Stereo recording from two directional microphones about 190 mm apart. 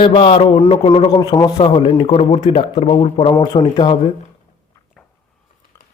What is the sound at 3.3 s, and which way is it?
Speech, 20° left (ahead or behind).